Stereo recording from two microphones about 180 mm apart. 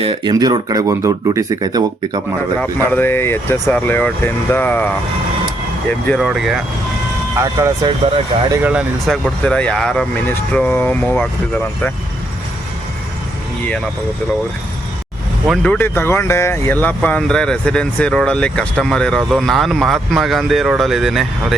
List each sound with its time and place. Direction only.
0.0 s speech: 25° right (ahead or behind)
2.6 s speech: 10° left (ahead or behind)
5.9 s speech: 5° left (ahead or behind)
7.4 s speech: 15° right (ahead or behind)
7.9 s speech: 30° right (ahead or behind)
8.6 s speech: 5° right (ahead or behind)
9.2 s speech: 5° left (ahead or behind)
15.4 s speech: 5° left (ahead or behind)